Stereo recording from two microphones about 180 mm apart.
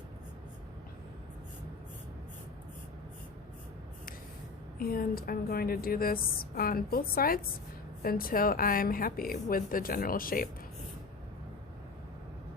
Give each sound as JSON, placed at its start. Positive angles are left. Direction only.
{"t": 4.8, "sound": "a woman's voice", "side_deg": 55}